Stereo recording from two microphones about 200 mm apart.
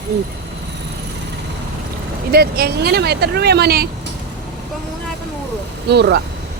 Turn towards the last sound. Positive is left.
turn(degrees=-55)  # may be behind; listen again after turning